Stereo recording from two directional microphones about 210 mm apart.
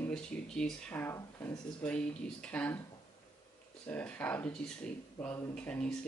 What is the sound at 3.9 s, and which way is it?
Speech, 5° left (ahead or behind).